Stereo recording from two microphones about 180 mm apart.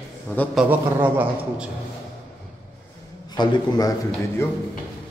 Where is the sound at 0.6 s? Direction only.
10° right (ahead or behind).